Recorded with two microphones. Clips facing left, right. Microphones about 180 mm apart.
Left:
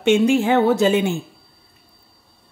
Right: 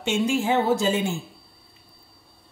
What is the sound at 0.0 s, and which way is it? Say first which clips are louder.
Speech: left 8 dB; 65° left (ahead or behind).